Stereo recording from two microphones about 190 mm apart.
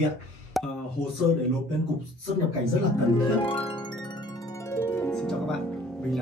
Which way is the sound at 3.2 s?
30° left (ahead or behind).